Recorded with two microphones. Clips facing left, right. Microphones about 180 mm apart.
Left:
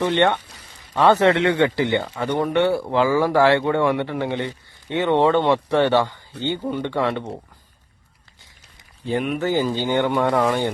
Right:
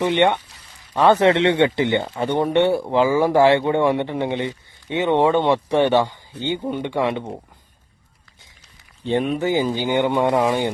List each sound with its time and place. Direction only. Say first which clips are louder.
0.0 s speech: right 1 dB; 15° right (ahead or behind)
9.0 s speech: right 2 dB; 30° right (ahead or behind)
9.4 s speech: right 1 dB; 15° right (ahead or behind)